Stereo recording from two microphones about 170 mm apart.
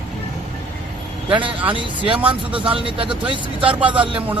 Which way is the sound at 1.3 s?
30° right (ahead or behind).